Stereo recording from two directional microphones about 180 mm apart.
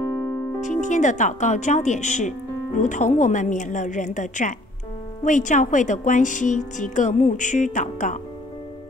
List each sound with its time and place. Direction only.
0.6 s speech: 40° left (ahead or behind)